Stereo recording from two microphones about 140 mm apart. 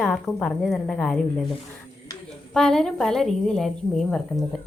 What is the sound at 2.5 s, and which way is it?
Speech, 5° left (ahead or behind).